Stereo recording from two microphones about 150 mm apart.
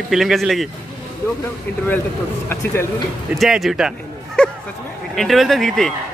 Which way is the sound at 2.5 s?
20° left (ahead or behind).